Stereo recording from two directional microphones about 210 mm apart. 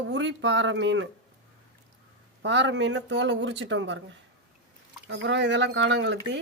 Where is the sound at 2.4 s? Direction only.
55° right (ahead or behind).